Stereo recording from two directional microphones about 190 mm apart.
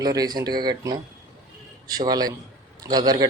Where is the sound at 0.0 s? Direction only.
20° right (ahead or behind).